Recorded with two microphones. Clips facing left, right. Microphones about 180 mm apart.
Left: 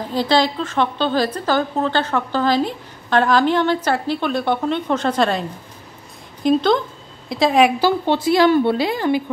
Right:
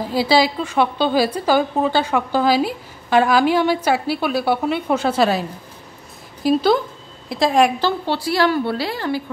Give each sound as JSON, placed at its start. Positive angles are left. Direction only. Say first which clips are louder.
{"t": 0.0, "sound": "a woman's voice", "louder": "right 1 dB", "side_deg": -10}
{"t": 7.8, "sound": "a woman's voice", "louder": "left 4 dB", "side_deg": 20}